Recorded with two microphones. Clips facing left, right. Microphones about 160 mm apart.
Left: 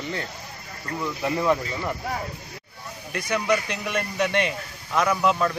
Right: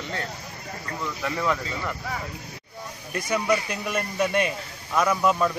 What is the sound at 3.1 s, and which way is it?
Speech, 5° right (ahead or behind).